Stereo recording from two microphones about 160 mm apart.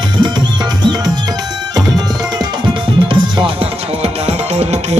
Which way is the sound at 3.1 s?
35° right (ahead or behind).